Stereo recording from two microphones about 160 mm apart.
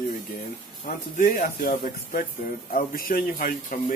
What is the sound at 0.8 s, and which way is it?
Speech, 60° left (ahead or behind).